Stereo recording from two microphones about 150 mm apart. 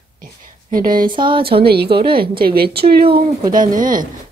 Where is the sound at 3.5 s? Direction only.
65° right (ahead or behind).